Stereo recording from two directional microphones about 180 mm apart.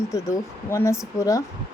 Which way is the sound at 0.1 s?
15° left (ahead or behind).